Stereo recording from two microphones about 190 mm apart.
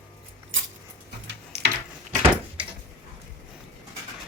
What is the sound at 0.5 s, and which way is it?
Dog, 90° right.